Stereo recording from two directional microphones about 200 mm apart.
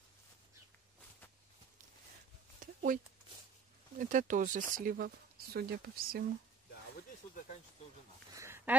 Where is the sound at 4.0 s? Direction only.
40° right (ahead or behind).